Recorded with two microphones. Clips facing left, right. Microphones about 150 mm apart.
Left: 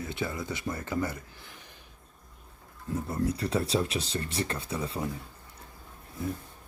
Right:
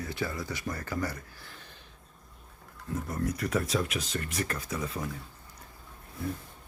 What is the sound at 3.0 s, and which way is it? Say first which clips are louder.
Speech: left 2 dB; 30° left (ahead or behind).